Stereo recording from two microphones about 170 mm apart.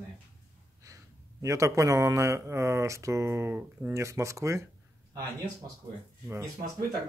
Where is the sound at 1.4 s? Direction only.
20° right (ahead or behind).